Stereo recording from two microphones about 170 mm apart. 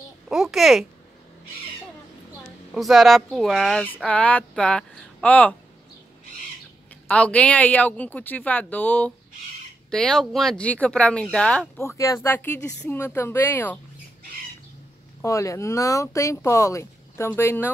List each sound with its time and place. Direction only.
0.3 s speech: centre (ahead or behind)
2.7 s speech: centre (ahead or behind)
7.1 s speech: 5° left (ahead or behind)
11.8 s speech: 15° left (ahead or behind)
15.2 s speech: 20° left (ahead or behind)